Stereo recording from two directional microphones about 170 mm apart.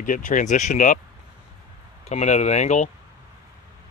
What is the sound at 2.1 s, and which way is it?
Speech, 40° left (ahead or behind).